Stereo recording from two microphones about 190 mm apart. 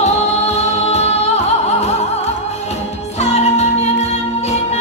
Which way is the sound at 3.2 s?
35° left (ahead or behind).